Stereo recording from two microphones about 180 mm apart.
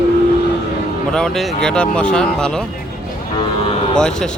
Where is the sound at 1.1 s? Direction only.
5° left (ahead or behind).